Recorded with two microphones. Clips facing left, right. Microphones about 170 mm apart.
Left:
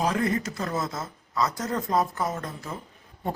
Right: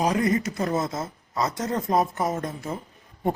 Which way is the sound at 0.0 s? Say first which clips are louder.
Right 3 dB; 15° right (ahead or behind).